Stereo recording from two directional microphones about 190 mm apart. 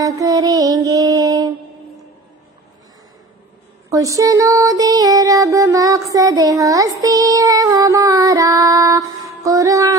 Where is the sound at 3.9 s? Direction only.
15° right (ahead or behind).